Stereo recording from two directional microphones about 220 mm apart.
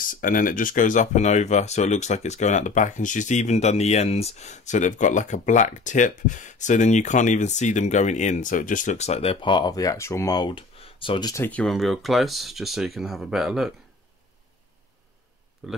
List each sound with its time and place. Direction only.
0.1 s speech: 40° left (ahead or behind); by 13.7 s centre (ahead or behind)
15.6 s speech: 5° right (ahead or behind)